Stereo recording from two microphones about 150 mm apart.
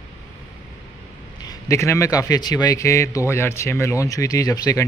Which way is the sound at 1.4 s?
20° left (ahead or behind).